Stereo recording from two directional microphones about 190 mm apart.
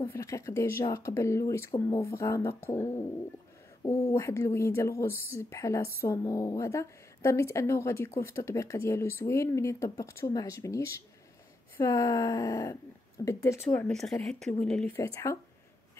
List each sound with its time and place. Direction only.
0.1 s speech: 15° left (ahead or behind)
13.7 s speech: 5° left (ahead or behind)
15.0 s speech: 15° left (ahead or behind)